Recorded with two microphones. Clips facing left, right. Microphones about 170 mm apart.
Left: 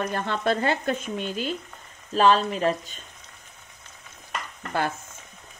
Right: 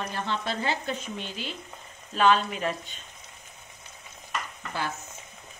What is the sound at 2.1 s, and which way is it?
Speech, 35° left (ahead or behind).